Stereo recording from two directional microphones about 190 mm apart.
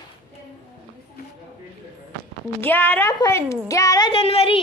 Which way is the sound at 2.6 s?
10° left (ahead or behind).